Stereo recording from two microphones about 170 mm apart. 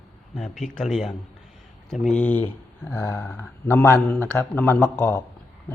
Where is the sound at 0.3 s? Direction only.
5° left (ahead or behind).